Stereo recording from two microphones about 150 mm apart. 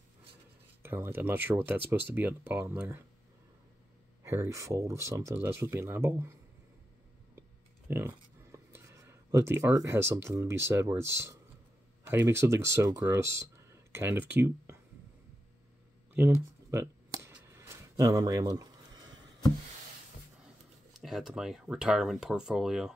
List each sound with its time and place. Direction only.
0.8 s speech: 15° right (ahead or behind)
4.2 s speech: 20° right (ahead or behind)
7.9 s speech: 15° right (ahead or behind)
16.3 s a sound: 20° right (ahead or behind)
21.0 s speech: centre (ahead or behind)